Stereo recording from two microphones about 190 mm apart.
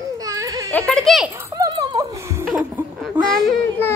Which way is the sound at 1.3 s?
15° right (ahead or behind).